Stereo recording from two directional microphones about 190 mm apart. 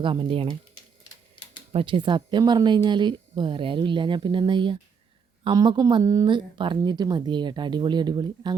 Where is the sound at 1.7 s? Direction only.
25° right (ahead or behind).